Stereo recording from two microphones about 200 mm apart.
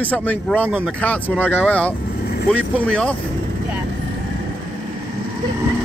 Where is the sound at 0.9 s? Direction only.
5° left (ahead or behind).